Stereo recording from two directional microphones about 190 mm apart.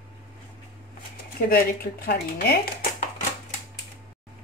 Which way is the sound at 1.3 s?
55° left (ahead or behind).